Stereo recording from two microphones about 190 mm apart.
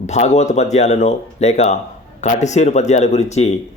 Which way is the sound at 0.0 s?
35° left (ahead or behind).